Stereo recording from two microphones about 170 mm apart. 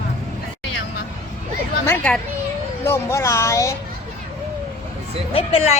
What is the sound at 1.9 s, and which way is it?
Speech, 10° left (ahead or behind).